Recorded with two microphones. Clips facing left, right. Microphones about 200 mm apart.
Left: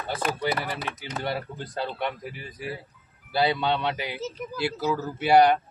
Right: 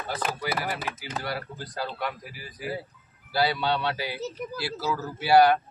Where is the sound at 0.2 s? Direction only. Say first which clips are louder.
Left 4 dB; centre (ahead or behind).